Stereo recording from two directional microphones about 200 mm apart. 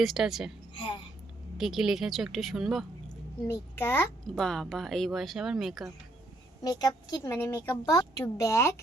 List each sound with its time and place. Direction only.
0.0 s a child's voice: centre (ahead or behind)
1.5 s a child's voice: centre (ahead or behind)
3.1 s a child's voice: 15° left (ahead or behind)
6.6 s a woman's voice: 20° left (ahead or behind)